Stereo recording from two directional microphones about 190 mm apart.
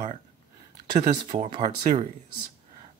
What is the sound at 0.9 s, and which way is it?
Speech, 25° right (ahead or behind).